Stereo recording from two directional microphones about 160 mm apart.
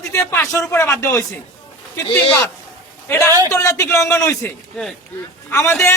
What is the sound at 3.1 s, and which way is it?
A man's voice, 15° left (ahead or behind).